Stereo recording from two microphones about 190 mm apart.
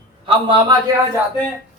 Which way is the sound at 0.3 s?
25° right (ahead or behind).